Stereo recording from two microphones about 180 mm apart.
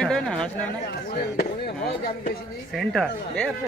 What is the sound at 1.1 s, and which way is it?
Speech, 65° left (ahead or behind).